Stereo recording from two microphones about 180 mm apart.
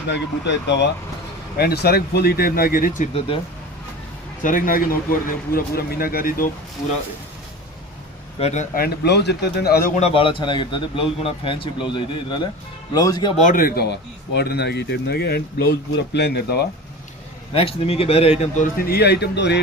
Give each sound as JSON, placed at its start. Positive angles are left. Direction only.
{"t": 0.1, "sound": "speech", "side_deg": 75}
{"t": 1.5, "sound": "speech", "side_deg": 60}
{"t": 4.4, "sound": "a man's voice", "side_deg": 50}
{"t": 8.4, "sound": "speech", "side_deg": 35}
{"t": 8.7, "sound": "speech", "side_deg": 60}
{"t": 9.9, "sound": "a man's voice", "side_deg": 35}
{"t": 13.4, "sound": "speech", "side_deg": 50}
{"t": 17.5, "sound": "a man's voice", "side_deg": 30}